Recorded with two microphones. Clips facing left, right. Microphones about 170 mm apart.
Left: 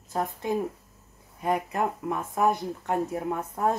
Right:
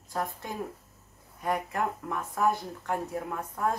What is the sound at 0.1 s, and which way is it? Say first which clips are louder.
Speech: left 6 dB; 20° left (ahead or behind).